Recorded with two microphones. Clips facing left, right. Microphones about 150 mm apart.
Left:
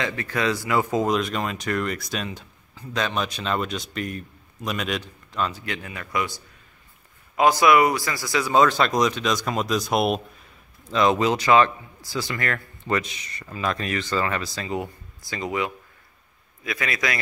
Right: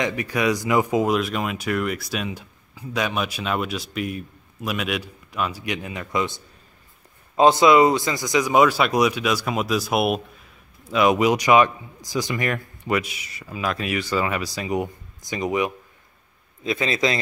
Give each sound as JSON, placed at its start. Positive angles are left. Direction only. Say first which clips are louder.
{"t": 0.0, "sound": "a man's voice", "louder": "right 3 dB", "side_deg": -15}